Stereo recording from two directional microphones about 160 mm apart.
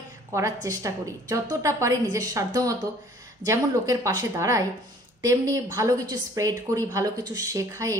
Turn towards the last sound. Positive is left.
turn(degrees=-20)  # may be behind; listen again after turning